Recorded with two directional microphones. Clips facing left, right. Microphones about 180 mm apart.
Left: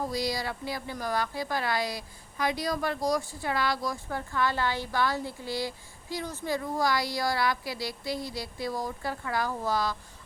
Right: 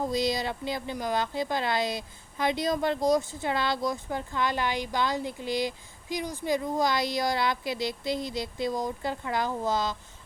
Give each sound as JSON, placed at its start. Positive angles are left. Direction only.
{"t": 0.1, "sound": "a woman's voice", "side_deg": -20}